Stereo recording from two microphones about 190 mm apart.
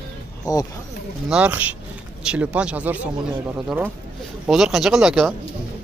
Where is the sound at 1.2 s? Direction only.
5° right (ahead or behind).